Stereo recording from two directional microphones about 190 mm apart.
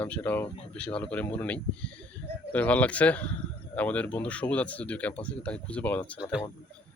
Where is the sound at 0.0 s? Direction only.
10° left (ahead or behind).